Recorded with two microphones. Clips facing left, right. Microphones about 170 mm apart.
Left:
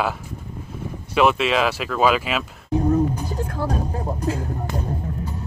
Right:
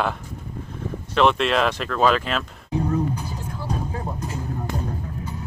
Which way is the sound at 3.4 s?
90° left.